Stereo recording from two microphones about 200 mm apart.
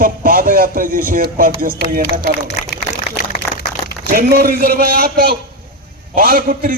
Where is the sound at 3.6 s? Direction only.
50° left (ahead or behind).